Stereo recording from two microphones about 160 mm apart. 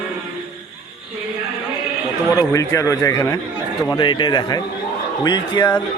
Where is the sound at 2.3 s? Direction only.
20° left (ahead or behind).